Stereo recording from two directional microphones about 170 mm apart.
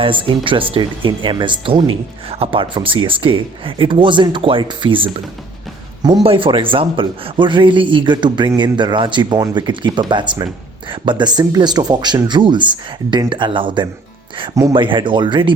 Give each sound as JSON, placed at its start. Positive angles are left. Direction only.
{"t": 0.0, "sound": "speech", "side_deg": -30}